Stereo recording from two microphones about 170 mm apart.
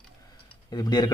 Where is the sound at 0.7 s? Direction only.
25° left (ahead or behind).